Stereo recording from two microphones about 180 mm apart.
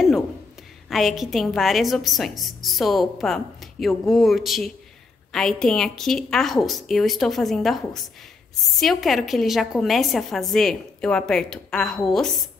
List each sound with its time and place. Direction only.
0.8 s a woman's voice: centre (ahead or behind)